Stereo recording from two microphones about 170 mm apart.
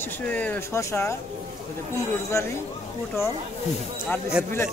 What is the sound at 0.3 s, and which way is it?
Speech, 10° left (ahead or behind).